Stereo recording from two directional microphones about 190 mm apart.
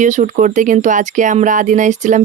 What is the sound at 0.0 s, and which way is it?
Speech, 40° right (ahead or behind).